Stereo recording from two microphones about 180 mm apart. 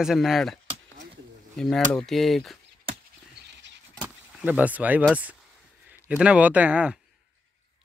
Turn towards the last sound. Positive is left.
turn(degrees=-5)  # may be behind; listen again after turning